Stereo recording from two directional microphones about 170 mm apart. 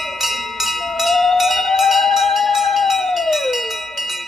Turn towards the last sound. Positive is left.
turn(degrees=0)  # may be behind; listen again after turning